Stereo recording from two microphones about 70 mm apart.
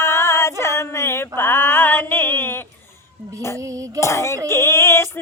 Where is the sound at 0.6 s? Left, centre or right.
Left.